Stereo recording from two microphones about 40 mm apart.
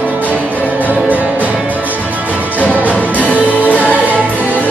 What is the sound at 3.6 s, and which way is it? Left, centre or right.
Music, left.